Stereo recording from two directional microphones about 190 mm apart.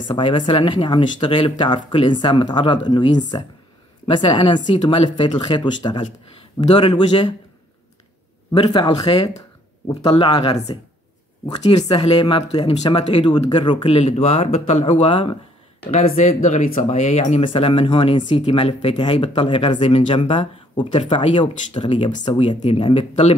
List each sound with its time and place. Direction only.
0.1 s speech: 25° left (ahead or behind)
8.5 s speech: 25° left (ahead or behind)